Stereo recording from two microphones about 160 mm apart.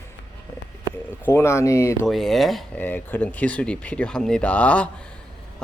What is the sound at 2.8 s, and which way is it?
Speech, 10° left (ahead or behind).